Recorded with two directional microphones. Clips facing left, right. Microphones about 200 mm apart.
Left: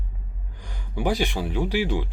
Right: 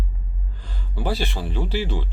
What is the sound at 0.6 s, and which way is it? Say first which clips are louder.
Speech: left 2 dB; 15° left (ahead or behind).